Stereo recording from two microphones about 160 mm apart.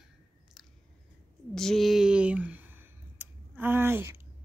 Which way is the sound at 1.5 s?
Centre (ahead or behind).